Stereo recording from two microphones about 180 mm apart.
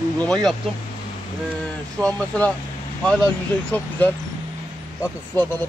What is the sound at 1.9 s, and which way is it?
Speech, 5° left (ahead or behind).